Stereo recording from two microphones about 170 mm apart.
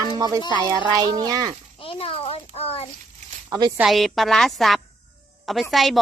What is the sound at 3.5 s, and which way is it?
Speech, 20° right (ahead or behind).